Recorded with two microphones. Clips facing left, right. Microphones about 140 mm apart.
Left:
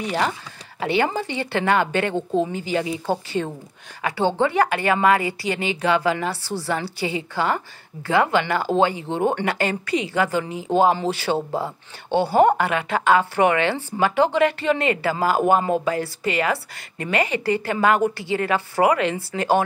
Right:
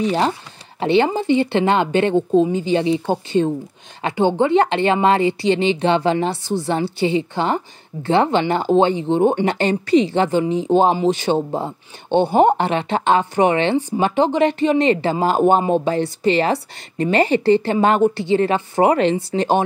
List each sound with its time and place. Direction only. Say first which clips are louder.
0.7 s a woman's voice: right 5 dB; 25° right (ahead or behind)